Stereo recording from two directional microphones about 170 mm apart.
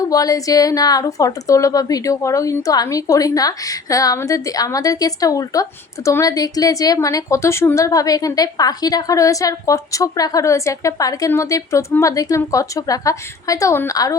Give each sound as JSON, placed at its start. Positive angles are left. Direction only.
{"t": 0.0, "sound": "a woman's voice", "side_deg": 20}